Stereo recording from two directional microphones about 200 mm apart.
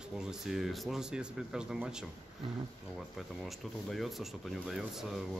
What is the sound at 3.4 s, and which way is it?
Speech, centre (ahead or behind).